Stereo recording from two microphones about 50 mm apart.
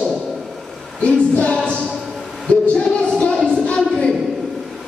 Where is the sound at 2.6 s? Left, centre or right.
Left.